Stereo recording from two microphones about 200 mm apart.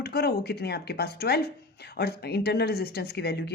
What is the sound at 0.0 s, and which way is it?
A woman's voice, 50° left (ahead or behind).